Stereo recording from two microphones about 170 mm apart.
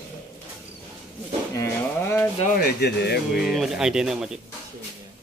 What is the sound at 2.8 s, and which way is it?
Speech, 75° left (ahead or behind).